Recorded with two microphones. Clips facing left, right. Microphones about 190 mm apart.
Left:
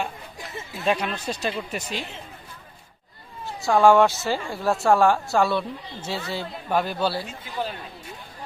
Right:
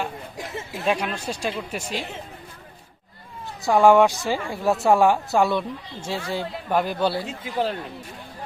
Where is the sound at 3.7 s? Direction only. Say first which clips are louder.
Right 1 dB; 15° right (ahead or behind).